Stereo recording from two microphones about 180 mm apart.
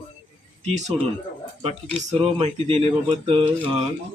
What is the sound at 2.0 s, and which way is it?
Speech, 35° right (ahead or behind).